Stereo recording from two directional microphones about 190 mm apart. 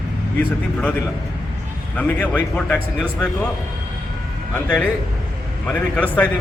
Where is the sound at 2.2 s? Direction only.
10° left (ahead or behind).